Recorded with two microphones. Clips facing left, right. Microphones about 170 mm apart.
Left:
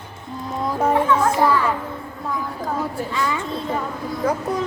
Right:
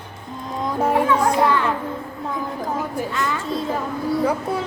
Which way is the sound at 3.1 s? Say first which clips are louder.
Left 3 dB; centre (ahead or behind).